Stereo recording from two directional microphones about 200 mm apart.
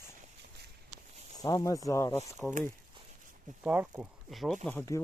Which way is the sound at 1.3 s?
15° left (ahead or behind).